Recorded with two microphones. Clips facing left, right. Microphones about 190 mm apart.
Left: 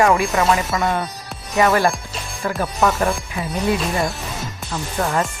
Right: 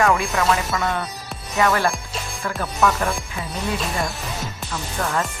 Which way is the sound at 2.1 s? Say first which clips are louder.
Right 1 dB; centre (ahead or behind).